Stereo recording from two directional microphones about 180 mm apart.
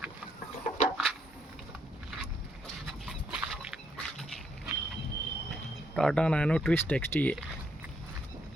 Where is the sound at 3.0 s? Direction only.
Centre (ahead or behind).